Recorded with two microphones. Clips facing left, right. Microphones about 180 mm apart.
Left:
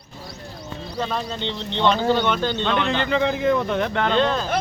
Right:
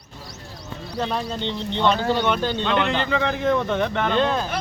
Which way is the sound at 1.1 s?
5° right (ahead or behind).